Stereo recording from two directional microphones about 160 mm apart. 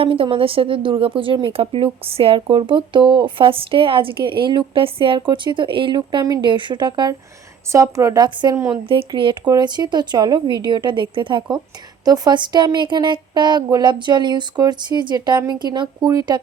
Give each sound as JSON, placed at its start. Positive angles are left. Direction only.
{"t": 0.0, "sound": "speech", "side_deg": -35}